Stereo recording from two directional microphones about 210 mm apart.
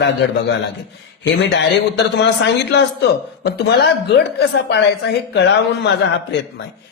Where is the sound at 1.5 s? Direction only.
55° left (ahead or behind).